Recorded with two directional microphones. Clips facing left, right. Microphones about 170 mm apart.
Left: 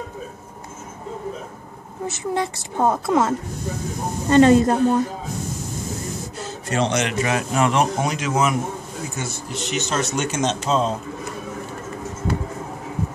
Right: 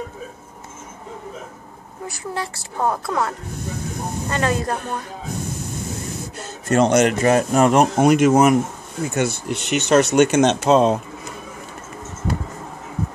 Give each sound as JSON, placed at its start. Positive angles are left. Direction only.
{"t": 2.0, "sound": "a woman's voice", "side_deg": 20}
{"t": 6.7, "sound": "a man's voice", "side_deg": -45}
{"t": 8.0, "sound": "speech", "side_deg": -60}
{"t": 9.1, "sound": "speech", "side_deg": -65}